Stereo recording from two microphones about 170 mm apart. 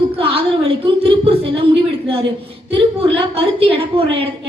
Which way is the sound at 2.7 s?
30° right (ahead or behind).